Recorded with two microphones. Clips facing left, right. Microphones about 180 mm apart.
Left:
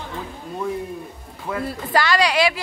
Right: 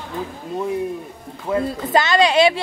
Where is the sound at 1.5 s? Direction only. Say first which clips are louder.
Right 5 dB; 20° right (ahead or behind).